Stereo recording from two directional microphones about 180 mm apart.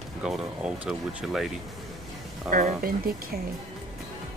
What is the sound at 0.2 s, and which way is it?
Speech, 5° right (ahead or behind).